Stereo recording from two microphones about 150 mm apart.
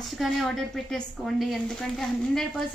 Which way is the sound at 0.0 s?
Centre (ahead or behind).